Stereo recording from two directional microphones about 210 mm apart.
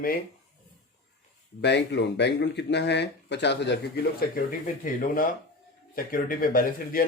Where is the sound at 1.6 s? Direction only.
55° left (ahead or behind).